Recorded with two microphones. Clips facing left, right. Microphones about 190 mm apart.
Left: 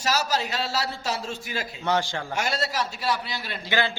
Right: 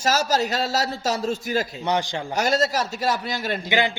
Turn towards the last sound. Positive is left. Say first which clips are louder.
# right 3 dB
turn(degrees=-15)  # may be behind; listen again after turning